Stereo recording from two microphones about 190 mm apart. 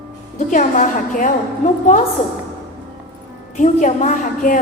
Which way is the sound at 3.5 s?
40° left (ahead or behind).